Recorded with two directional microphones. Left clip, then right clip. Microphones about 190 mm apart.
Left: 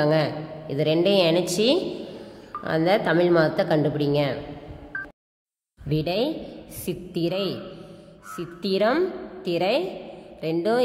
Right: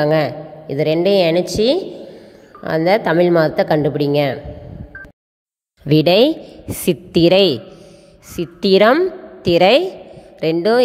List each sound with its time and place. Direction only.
0.0 s a woman's voice: 35° right (ahead or behind)
5.9 s a woman's voice: 45° right (ahead or behind)